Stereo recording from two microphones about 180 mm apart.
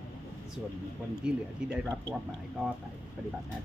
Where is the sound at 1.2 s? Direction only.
5° right (ahead or behind).